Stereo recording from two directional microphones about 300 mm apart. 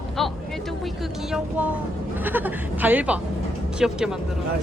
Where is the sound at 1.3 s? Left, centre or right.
Centre.